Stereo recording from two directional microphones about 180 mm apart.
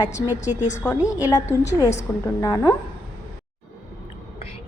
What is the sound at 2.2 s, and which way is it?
Speech, 15° left (ahead or behind).